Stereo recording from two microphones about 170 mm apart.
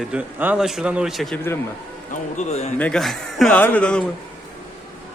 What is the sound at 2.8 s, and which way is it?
A man's voice, 5° left (ahead or behind).